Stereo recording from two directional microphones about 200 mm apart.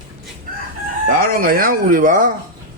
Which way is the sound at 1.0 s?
45° right (ahead or behind).